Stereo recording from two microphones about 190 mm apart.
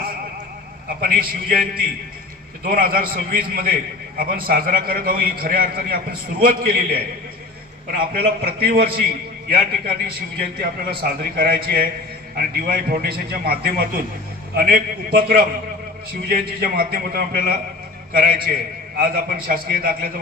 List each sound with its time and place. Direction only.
1.0 s a man's voice: 50° right (ahead or behind)
8.1 s a man's voice: 50° right (ahead or behind)